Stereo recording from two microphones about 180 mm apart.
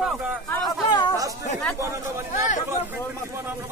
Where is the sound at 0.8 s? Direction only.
25° left (ahead or behind).